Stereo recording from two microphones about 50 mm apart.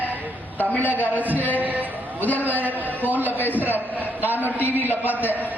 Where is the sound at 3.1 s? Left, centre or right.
Right.